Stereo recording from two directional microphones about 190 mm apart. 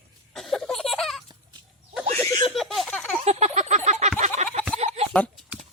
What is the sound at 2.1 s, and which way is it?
Speech, 15° left (ahead or behind).